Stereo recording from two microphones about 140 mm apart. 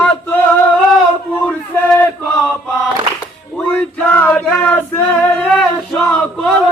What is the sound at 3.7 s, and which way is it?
Female singing, 10° left (ahead or behind).